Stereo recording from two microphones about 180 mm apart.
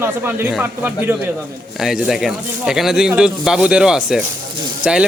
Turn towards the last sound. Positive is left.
turn(degrees=-5)  # may be behind; listen again after turning